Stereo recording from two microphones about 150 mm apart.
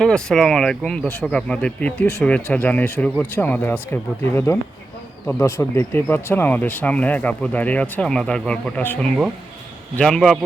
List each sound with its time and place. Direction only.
0.0 s speech: 5° left (ahead or behind)